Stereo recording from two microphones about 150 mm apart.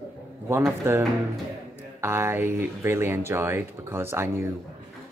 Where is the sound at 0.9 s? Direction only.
15° right (ahead or behind).